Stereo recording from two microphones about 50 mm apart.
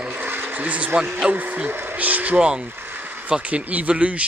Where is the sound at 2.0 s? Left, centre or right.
Right.